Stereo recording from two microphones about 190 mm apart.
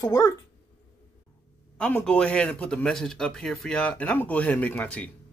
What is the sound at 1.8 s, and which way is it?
Speech, 5° left (ahead or behind).